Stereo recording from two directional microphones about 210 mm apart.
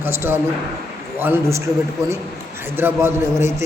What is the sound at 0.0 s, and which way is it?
A man's voice, 10° right (ahead or behind).